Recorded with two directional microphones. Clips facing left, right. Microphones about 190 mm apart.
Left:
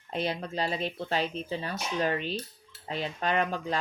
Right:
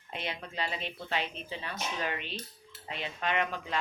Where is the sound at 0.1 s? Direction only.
35° left (ahead or behind).